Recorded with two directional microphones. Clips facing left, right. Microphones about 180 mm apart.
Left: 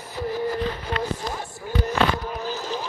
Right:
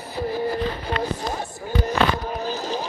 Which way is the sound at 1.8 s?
35° right (ahead or behind).